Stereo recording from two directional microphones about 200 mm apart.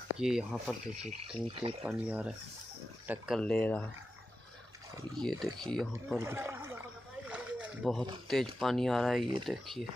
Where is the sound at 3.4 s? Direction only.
5° left (ahead or behind).